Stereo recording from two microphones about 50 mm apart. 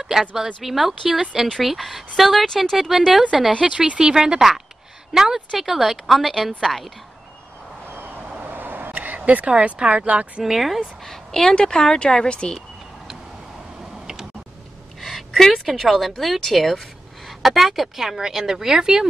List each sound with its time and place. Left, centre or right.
0.0 s speech: centre
2.4 s speech: centre
3.1 s speech: centre
3.7 s speech: right
4.0 s speech: centre
7.9 s a sound: right
9.6 s speech: centre
10.4 s speech: centre
11.0 s a woman's voice: centre
12.5 s a sound: centre
15.0 s speech: centre